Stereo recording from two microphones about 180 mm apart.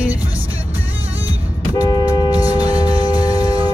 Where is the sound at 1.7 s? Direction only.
20° left (ahead or behind).